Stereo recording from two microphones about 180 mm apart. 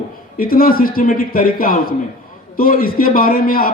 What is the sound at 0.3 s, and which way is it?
Speech, 55° left (ahead or behind).